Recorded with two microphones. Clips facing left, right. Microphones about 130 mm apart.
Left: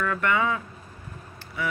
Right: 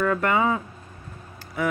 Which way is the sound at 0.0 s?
40° right (ahead or behind).